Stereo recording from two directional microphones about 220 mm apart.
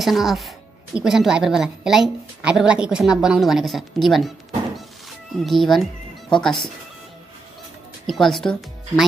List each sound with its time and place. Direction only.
0.0 s a woman's voice: centre (ahead or behind)
5.4 s a woman's voice: centre (ahead or behind)
8.1 s a woman's voice: centre (ahead or behind)